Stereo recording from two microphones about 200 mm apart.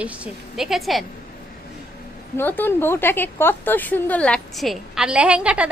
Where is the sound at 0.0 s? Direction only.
5° right (ahead or behind).